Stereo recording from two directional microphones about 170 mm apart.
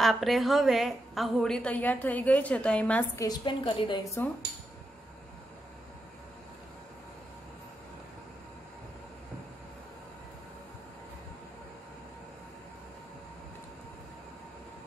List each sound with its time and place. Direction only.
0.0 s a woman's voice: centre (ahead or behind)
3.3 s a woman's voice: 30° left (ahead or behind)